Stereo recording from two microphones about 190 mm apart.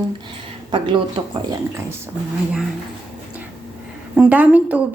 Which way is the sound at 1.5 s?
15° right (ahead or behind).